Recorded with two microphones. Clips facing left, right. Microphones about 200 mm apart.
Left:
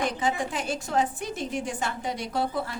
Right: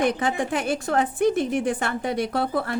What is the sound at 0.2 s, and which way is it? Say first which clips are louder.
A woman's voice: right 4 dB; 60° right (ahead or behind).